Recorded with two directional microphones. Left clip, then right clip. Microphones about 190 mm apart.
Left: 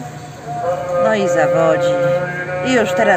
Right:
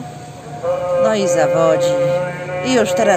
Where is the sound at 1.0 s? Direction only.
15° right (ahead or behind).